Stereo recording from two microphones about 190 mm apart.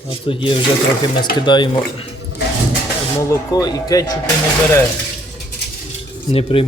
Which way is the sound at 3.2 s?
20° left (ahead or behind).